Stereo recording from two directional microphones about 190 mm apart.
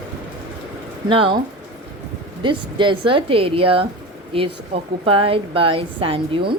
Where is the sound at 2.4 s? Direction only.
25° right (ahead or behind).